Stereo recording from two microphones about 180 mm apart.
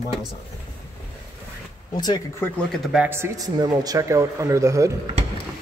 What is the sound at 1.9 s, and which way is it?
Speech, 25° left (ahead or behind).